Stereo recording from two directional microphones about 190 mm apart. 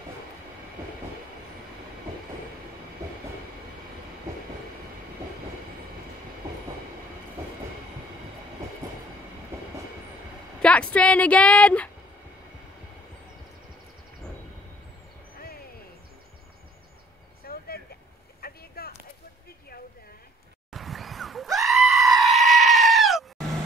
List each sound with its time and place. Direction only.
10.6 s a sound: 5° left (ahead or behind)
17.4 s vehicle: 55° left (ahead or behind)
20.7 s goat: centre (ahead or behind)